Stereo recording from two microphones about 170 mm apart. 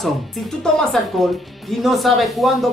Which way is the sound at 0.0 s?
Centre (ahead or behind).